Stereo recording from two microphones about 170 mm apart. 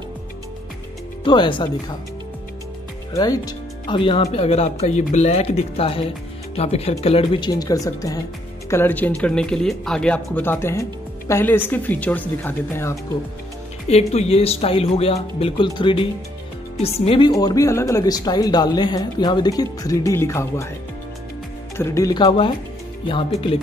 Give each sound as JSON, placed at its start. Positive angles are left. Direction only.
{"t": 1.2, "sound": "speech", "side_deg": 30}
{"t": 3.1, "sound": "speech", "side_deg": 20}
{"t": 13.8, "sound": "speech", "side_deg": 40}
{"t": 17.3, "sound": "speech", "side_deg": 20}
{"t": 21.7, "sound": "speech", "side_deg": 15}